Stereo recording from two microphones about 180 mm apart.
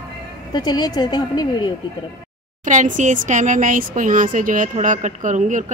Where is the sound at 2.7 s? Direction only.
45° right (ahead or behind).